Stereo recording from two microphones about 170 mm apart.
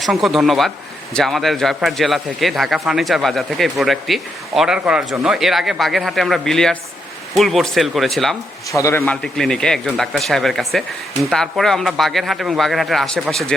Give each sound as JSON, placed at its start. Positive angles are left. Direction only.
{"t": 0.0, "sound": "speech", "side_deg": 0}
{"t": 8.7, "sound": "a man's voice", "side_deg": 15}
{"t": 9.2, "sound": "speech", "side_deg": 5}